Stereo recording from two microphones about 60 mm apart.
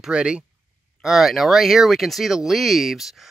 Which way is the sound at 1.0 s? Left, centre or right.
Centre.